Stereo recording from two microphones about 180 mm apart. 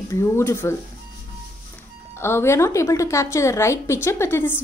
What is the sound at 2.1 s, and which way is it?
A woman's voice, 15° left (ahead or behind).